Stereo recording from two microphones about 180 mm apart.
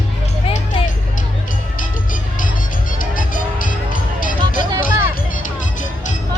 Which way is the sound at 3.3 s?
50° left (ahead or behind).